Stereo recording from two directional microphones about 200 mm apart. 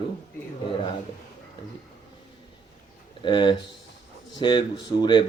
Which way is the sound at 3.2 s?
25° left (ahead or behind).